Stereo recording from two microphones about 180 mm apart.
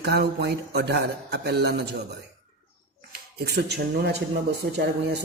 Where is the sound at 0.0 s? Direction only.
65° right (ahead or behind).